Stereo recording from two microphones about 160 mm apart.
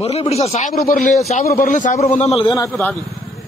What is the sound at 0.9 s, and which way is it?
A man's voice, 55° left (ahead or behind).